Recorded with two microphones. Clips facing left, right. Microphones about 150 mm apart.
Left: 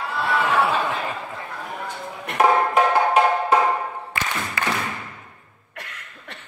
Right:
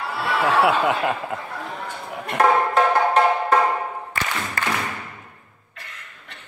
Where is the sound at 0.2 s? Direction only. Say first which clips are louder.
Right 2 dB; 90° right.